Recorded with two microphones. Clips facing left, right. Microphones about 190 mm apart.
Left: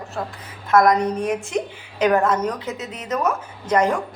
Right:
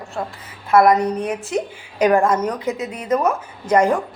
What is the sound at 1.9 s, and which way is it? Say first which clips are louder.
A woman's voice: right 2 dB; 10° right (ahead or behind).